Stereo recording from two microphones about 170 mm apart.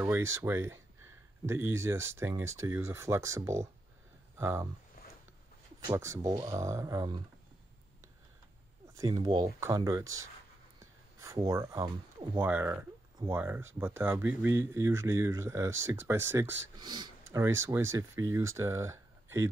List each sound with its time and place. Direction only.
0.0 s speech: 15° right (ahead or behind)
5.0 s a sound: 60° left (ahead or behind)
5.9 s speech: 20° right (ahead or behind)
8.9 s speech: 25° right (ahead or behind)